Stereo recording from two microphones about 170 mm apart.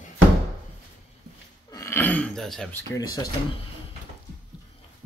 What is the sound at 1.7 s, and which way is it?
Throat clearing, 15° left (ahead or behind).